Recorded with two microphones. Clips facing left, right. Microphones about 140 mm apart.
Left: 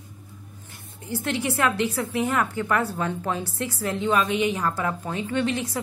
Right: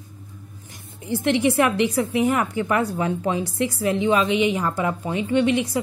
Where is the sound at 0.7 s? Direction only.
20° right (ahead or behind).